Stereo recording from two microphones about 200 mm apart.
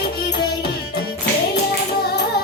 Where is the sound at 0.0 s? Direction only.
55° left (ahead or behind).